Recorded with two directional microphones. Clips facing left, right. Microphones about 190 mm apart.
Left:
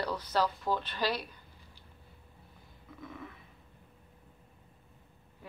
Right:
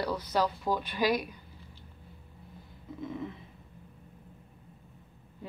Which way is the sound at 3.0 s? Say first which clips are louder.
Right 8 dB; 20° right (ahead or behind).